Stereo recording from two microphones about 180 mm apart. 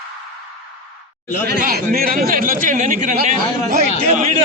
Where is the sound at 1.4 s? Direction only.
60° right (ahead or behind).